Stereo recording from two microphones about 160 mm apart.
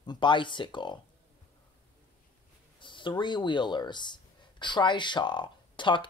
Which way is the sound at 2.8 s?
30° left (ahead or behind).